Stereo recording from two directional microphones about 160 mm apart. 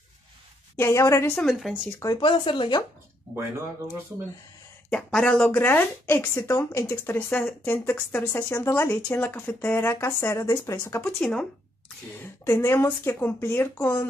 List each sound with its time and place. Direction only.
0.7 s a woman's voice: 15° left (ahead or behind)
1.2 s speech: 10° left (ahead or behind)
1.5 s speech: 5° right (ahead or behind)
1.9 s a woman's voice: 20° left (ahead or behind)
2.1 s speech: 30° left (ahead or behind)
4.8 s speech: 5° left (ahead or behind)
11.1 s speech: 5° left (ahead or behind)
12.4 s speech: 15° left (ahead or behind)